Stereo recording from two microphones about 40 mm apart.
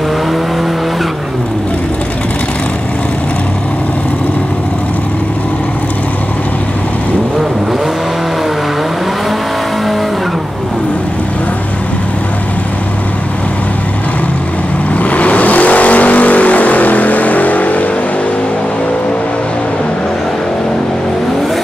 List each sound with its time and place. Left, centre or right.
15.0 s vehicle: left